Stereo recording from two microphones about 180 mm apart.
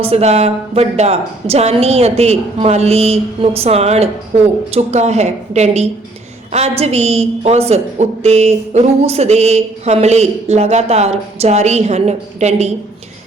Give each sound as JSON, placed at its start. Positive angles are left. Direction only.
{"t": 0.0, "sound": "a woman's voice", "side_deg": -35}